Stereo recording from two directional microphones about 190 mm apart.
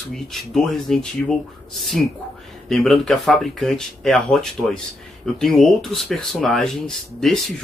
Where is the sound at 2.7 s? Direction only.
Centre (ahead or behind).